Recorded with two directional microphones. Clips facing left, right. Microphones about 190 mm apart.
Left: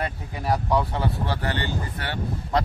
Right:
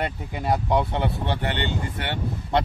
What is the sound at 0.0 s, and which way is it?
Speech, 20° right (ahead or behind).